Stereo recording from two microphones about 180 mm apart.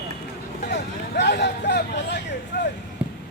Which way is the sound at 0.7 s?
70° left (ahead or behind).